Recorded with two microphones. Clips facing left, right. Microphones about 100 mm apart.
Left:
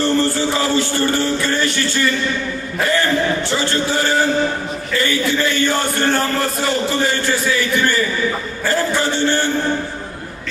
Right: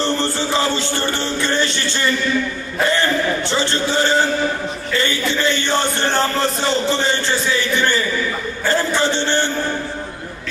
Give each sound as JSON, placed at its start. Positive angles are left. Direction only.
{"t": 0.0, "sound": "music", "side_deg": -25}
{"t": 2.8, "sound": "a man's voice", "side_deg": -25}